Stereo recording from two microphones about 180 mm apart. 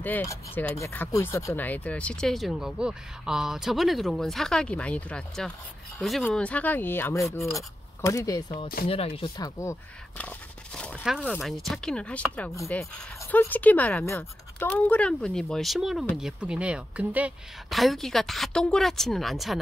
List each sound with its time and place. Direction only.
0.0 s speech: 15° left (ahead or behind)
8.8 s speech: 30° left (ahead or behind)
9.6 s speech: 10° left (ahead or behind)